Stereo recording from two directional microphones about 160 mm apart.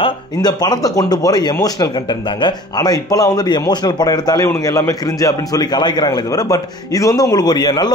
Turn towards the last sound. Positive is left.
turn(degrees=25)  # may be behind; listen again after turning